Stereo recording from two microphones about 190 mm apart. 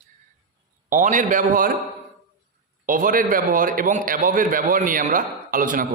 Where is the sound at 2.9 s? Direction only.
45° right (ahead or behind).